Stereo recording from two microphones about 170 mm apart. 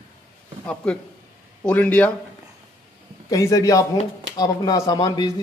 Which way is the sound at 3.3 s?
20° left (ahead or behind).